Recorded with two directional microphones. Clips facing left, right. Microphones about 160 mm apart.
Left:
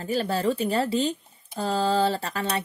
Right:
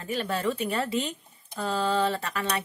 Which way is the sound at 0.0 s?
35° left (ahead or behind).